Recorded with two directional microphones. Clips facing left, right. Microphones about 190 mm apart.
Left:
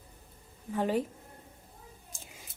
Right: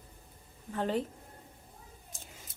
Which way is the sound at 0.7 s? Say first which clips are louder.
Left 2 dB; 10° left (ahead or behind).